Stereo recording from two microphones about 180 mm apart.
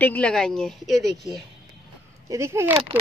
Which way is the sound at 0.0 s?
5° left (ahead or behind).